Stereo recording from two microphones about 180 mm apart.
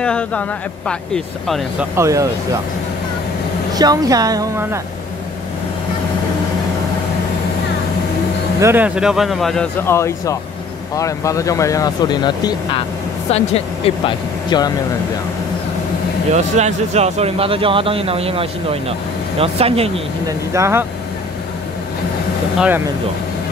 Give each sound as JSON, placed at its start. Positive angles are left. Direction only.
{"t": 0.0, "sound": "a man's voice", "side_deg": 5}
{"t": 1.8, "sound": "speech", "side_deg": -15}
{"t": 3.7, "sound": "a woman's voice", "side_deg": -20}
{"t": 8.5, "sound": "a man's voice", "side_deg": -10}
{"t": 16.3, "sound": "speech", "side_deg": -40}
{"t": 20.2, "sound": "speech", "side_deg": -15}